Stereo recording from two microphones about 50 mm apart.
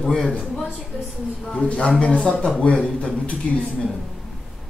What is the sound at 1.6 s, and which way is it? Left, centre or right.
Speech, left.